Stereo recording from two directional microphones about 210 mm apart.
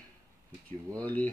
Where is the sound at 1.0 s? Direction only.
5° left (ahead or behind).